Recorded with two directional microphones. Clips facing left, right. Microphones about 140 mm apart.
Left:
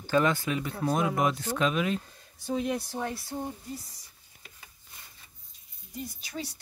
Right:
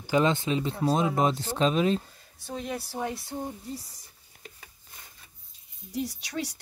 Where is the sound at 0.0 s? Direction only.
20° right (ahead or behind).